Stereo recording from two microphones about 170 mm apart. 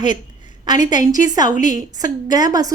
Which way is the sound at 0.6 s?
25° right (ahead or behind).